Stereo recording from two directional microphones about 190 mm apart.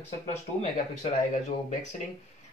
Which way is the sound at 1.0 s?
35° left (ahead or behind).